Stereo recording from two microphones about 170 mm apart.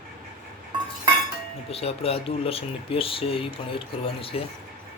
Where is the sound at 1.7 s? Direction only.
35° left (ahead or behind).